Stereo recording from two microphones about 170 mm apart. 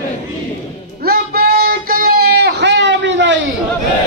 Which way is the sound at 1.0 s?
60° right (ahead or behind).